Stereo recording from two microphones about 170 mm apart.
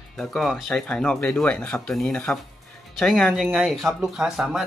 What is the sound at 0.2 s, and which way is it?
Speech, centre (ahead or behind).